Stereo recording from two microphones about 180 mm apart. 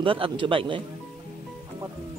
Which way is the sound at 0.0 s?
30° right (ahead or behind).